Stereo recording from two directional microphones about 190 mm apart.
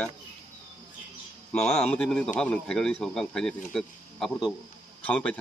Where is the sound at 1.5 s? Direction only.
5° left (ahead or behind).